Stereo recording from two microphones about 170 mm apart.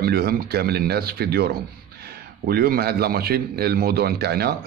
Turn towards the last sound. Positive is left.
turn(degrees=-65)  # may be behind; listen again after turning